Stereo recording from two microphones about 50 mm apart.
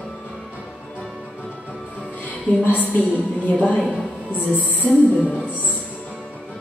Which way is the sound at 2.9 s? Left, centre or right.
Left.